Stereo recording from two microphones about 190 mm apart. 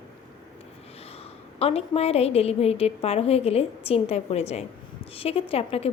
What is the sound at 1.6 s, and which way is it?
A woman's voice, 30° left (ahead or behind).